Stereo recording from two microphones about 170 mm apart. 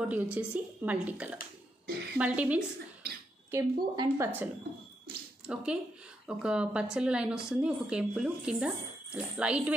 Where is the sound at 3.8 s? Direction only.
25° right (ahead or behind).